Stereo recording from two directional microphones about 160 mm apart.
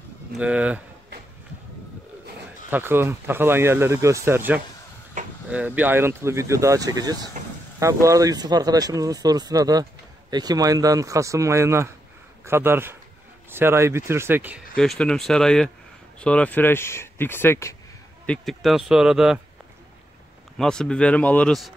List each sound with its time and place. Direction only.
0.4 s speech: 5° right (ahead or behind)
2.7 s speech: 15° right (ahead or behind)
5.2 s a sound: 50° right (ahead or behind)
5.5 s speech: 10° right (ahead or behind)
14.8 s speech: 5° left (ahead or behind)
18.2 s speech: 5° left (ahead or behind)
20.5 s speech: 5° left (ahead or behind)